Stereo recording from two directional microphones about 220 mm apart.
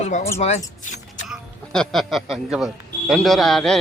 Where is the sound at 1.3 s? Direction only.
Centre (ahead or behind).